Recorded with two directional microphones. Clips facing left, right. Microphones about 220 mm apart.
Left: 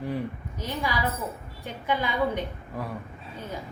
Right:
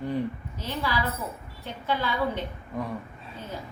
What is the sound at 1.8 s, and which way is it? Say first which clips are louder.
Speech: left 1 dB; 15° left (ahead or behind).